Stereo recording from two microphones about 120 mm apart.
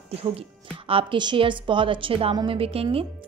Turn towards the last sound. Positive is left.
turn(degrees=-55)  # may be behind; listen again after turning